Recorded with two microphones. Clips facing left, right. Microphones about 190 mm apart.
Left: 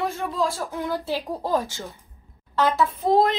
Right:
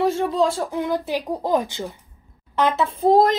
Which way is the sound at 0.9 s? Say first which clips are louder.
Right 3 dB; 15° right (ahead or behind).